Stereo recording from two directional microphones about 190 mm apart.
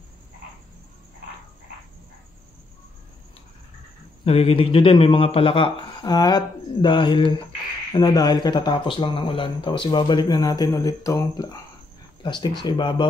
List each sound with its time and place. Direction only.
4.2 s speech: 30° left (ahead or behind)